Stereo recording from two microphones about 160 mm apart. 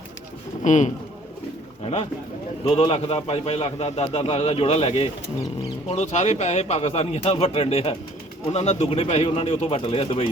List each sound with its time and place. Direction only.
0.6 s a man's voice: 50° left (ahead or behind)